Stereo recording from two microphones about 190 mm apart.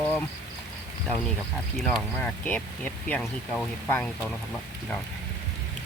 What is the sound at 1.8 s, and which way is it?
Speech, 5° left (ahead or behind).